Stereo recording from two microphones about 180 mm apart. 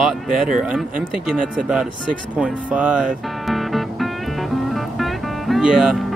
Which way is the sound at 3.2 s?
Centre (ahead or behind).